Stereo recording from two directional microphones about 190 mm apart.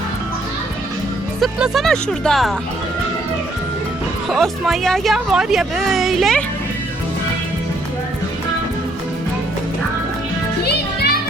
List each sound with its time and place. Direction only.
1.4 s speech: centre (ahead or behind)
4.3 s speech: centre (ahead or behind)
10.6 s music: 55° left (ahead or behind)